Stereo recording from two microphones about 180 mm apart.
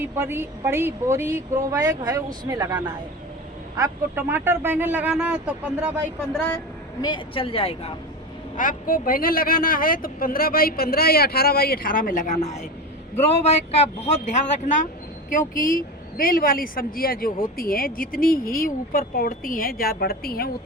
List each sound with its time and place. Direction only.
0.0 s speech: 15° right (ahead or behind)
6.3 s a woman's voice: 10° left (ahead or behind)
7.0 s speech: 25° left (ahead or behind)
8.5 s speech: 50° left (ahead or behind)
15.3 s speech: 50° left (ahead or behind)